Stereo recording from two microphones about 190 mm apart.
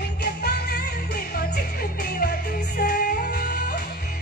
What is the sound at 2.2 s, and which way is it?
Music, 55° left (ahead or behind).